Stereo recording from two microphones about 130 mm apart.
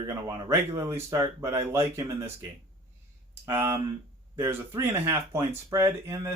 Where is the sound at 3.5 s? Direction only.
20° right (ahead or behind).